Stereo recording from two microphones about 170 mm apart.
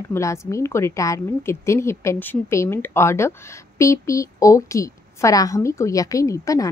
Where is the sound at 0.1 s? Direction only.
15° left (ahead or behind).